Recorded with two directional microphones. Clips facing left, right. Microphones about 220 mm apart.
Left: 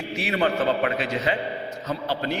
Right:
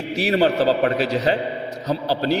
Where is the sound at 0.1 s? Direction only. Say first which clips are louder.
Right 6 dB; 35° right (ahead or behind).